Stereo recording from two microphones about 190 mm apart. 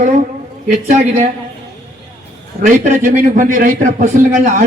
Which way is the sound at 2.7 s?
40° right (ahead or behind).